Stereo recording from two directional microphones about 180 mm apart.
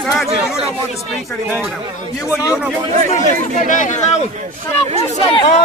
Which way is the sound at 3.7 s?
45° left (ahead or behind).